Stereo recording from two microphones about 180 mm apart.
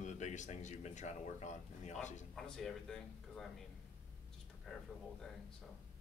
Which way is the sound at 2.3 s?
5° left (ahead or behind).